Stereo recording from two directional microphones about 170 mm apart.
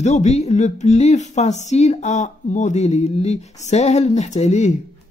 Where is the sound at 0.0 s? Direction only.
40° left (ahead or behind).